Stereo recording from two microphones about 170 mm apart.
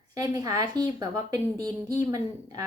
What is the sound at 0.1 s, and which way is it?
A woman's voice, 20° right (ahead or behind).